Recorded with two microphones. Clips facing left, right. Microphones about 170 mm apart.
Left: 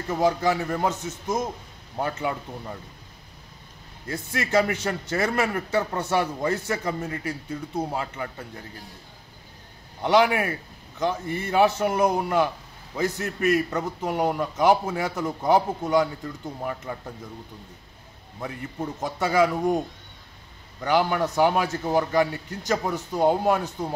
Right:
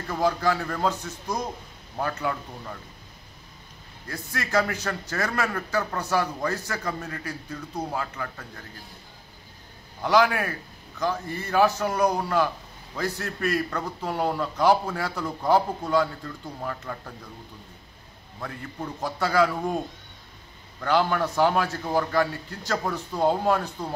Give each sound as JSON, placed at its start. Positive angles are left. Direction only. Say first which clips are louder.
{"t": 0.1, "sound": "a man's voice", "louder": "left 2 dB", "side_deg": 20}
{"t": 2.0, "sound": "a man's voice", "louder": "left 1 dB", "side_deg": 20}
{"t": 4.1, "sound": "a man's voice", "louder": "left 3 dB", "side_deg": 25}
{"t": 11.0, "sound": "a man's voice", "louder": "left 2 dB", "side_deg": 20}
{"t": 18.4, "sound": "a man's voice", "louder": "left 3 dB", "side_deg": 20}
{"t": 20.8, "sound": "a man's voice", "louder": "left 1 dB", "side_deg": 15}